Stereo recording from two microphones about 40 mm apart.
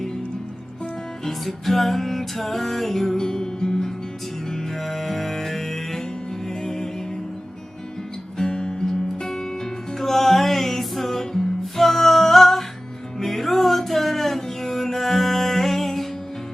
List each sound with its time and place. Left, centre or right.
1.2 s music: centre
8.4 s music: centre